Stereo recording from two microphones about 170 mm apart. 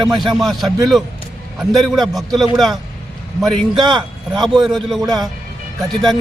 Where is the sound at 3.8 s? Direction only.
25° right (ahead or behind).